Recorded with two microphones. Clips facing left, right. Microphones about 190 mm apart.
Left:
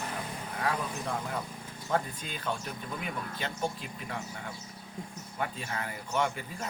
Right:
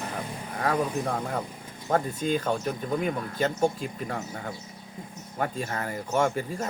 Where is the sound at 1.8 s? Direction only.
45° right (ahead or behind).